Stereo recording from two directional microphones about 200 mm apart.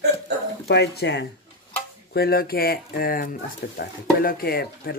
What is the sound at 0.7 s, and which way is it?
Speech, 55° left (ahead or behind).